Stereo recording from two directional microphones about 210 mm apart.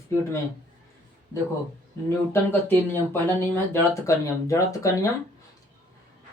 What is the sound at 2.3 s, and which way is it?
Speech, 10° left (ahead or behind).